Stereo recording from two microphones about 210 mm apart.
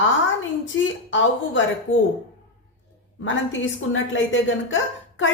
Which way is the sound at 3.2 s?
65° left (ahead or behind).